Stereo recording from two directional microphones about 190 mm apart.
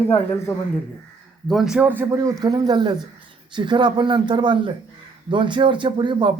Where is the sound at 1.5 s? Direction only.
Centre (ahead or behind).